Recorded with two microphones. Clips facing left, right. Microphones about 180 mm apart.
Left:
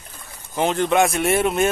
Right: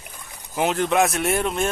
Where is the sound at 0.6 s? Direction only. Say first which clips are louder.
Left 2 dB; 5° right (ahead or behind).